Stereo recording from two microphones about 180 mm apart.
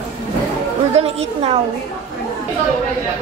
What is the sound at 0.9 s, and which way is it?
Speech, 35° right (ahead or behind).